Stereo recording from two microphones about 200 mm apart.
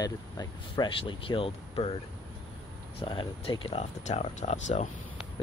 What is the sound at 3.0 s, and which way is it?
Speech, 25° left (ahead or behind).